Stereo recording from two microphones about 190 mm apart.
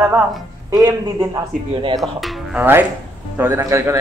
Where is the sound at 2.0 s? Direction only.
Centre (ahead or behind).